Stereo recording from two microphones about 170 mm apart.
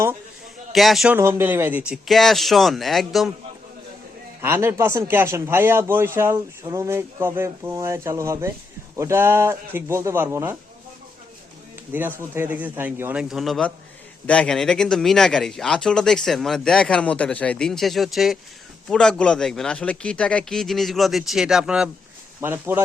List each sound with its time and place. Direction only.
0.7 s a man's voice: centre (ahead or behind)
1.1 s speech: 15° right (ahead or behind)
4.4 s a man's voice: 15° right (ahead or behind)
11.9 s a man's voice: 10° right (ahead or behind)